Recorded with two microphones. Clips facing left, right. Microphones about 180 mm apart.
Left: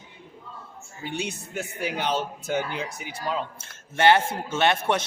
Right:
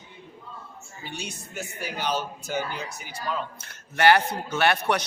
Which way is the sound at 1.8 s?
25° left (ahead or behind).